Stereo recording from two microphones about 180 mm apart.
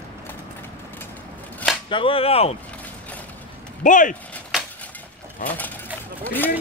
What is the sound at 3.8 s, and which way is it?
Speech, 45° left (ahead or behind).